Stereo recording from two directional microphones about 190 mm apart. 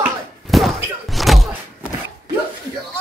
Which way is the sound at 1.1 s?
Centre (ahead or behind).